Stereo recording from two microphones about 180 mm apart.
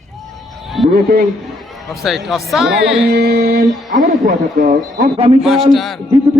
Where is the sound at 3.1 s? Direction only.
60° right (ahead or behind).